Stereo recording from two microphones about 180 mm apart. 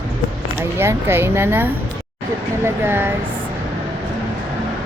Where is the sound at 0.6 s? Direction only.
15° right (ahead or behind).